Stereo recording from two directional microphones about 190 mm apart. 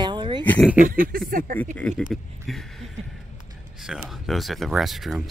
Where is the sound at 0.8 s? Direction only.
50° right (ahead or behind).